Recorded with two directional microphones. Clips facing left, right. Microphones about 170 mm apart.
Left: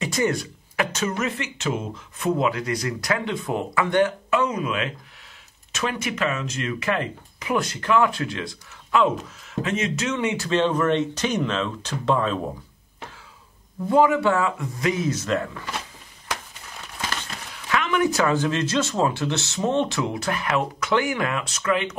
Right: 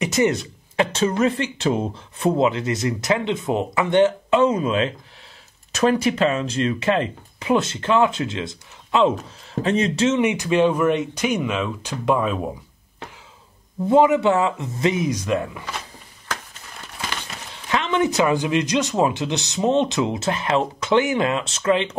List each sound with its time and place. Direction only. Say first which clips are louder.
0.0 s speech: right 4 dB; 20° right (ahead or behind)
9.6 s speech: right 6 dB; 35° right (ahead or behind); by 12.4 s 10° right (ahead or behind)
13.8 s speech: right 3 dB; 20° right (ahead or behind)
17.6 s speech: right 1 dB; 25° right (ahead or behind)